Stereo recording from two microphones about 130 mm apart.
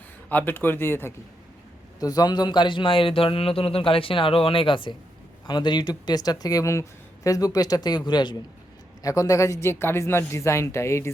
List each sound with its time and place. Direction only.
0.3 s speech: 15° left (ahead or behind)
2.0 s a man's voice: 30° left (ahead or behind)